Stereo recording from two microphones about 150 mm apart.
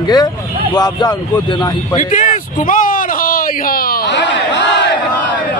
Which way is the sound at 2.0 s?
60° left (ahead or behind).